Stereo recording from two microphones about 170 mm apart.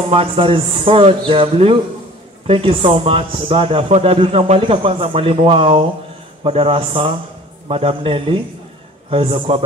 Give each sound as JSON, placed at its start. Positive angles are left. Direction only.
{"t": 0.1, "sound": "a man's voice", "side_deg": -30}